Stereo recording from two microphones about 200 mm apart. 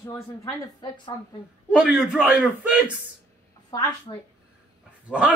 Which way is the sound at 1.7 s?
5° right (ahead or behind).